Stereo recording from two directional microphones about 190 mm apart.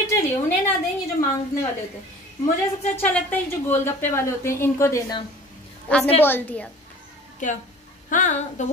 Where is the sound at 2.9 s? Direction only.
10° left (ahead or behind).